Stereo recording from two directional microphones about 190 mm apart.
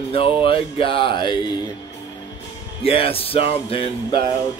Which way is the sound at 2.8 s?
30° left (ahead or behind).